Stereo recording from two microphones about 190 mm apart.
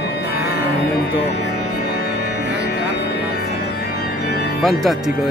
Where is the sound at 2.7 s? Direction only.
60° left (ahead or behind).